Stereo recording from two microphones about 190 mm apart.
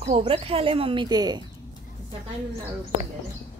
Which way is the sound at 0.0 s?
30° right (ahead or behind).